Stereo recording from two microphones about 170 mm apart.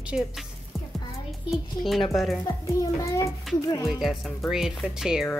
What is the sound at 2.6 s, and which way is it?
Speech, 20° left (ahead or behind).